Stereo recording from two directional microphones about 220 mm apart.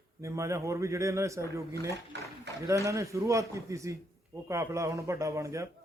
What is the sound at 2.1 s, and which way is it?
Speech, 50° right (ahead or behind).